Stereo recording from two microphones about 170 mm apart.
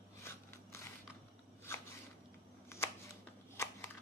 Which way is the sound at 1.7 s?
15° left (ahead or behind).